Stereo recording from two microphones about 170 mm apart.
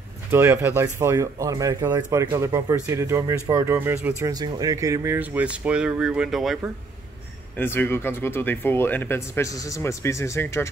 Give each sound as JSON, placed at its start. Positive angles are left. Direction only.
{"t": 0.3, "sound": "speech", "side_deg": -15}
{"t": 4.2, "sound": "speech", "side_deg": -20}
{"t": 7.5, "sound": "speech", "side_deg": 10}